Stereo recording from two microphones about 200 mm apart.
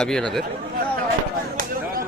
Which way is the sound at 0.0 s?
5° left (ahead or behind).